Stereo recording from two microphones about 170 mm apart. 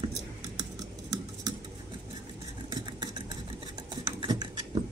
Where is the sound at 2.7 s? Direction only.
25° right (ahead or behind).